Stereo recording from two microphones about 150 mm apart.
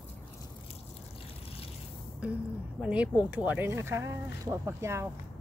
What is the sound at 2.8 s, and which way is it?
Speech, 10° right (ahead or behind).